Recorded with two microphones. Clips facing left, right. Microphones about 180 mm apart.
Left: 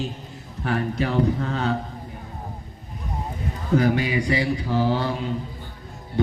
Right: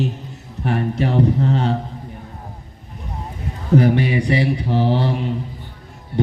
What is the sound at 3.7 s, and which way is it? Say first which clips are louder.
A man's voice: right 5 dB; 25° right (ahead or behind).